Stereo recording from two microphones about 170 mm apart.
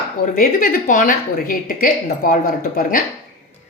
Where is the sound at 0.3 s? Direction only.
60° left (ahead or behind).